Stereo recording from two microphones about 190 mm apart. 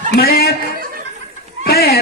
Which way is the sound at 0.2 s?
50° left (ahead or behind).